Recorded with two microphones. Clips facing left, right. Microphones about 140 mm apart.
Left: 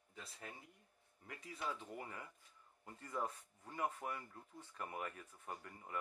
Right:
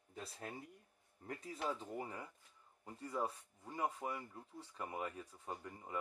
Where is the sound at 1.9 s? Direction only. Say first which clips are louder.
Right 4 dB; 30° right (ahead or behind).